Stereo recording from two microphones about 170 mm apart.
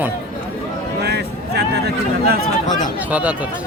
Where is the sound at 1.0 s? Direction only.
75° right (ahead or behind).